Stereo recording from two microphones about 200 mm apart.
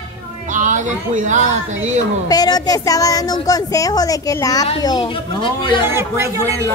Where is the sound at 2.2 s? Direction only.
20° left (ahead or behind).